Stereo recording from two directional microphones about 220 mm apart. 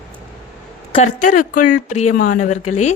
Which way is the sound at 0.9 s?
35° left (ahead or behind).